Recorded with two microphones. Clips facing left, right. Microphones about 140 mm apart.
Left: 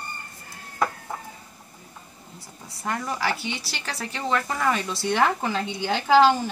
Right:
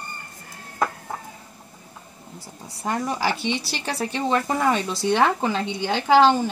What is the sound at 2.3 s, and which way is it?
A woman's voice, 30° right (ahead or behind).